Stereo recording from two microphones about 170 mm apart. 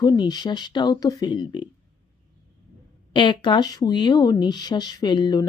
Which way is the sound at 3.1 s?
30° left (ahead or behind).